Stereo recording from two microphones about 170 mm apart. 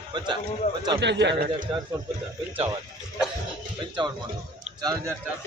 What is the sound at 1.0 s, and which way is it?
Speech, 90° right.